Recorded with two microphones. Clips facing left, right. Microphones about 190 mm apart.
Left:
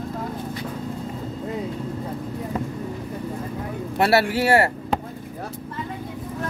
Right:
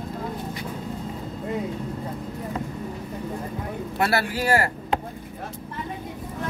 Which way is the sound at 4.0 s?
25° left (ahead or behind).